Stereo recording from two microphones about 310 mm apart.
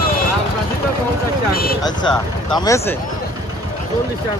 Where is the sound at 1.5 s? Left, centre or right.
Left.